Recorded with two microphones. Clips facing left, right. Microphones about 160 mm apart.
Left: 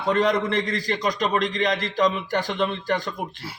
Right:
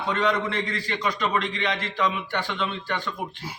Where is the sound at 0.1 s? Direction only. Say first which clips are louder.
Left 4 dB; 40° left (ahead or behind).